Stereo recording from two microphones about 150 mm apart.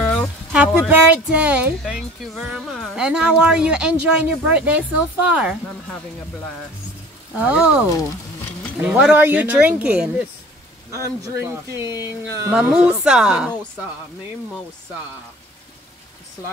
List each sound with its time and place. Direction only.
0.0 s a sound: 5° left (ahead or behind)
0.5 s speech: 10° right (ahead or behind)
7.3 s speech: 10° right (ahead or behind)
8.8 s speech: 10° right (ahead or behind)
10.9 s speech: 20° right (ahead or behind)
11.8 s speech: 25° left (ahead or behind)
12.5 s a woman's voice: 5° right (ahead or behind)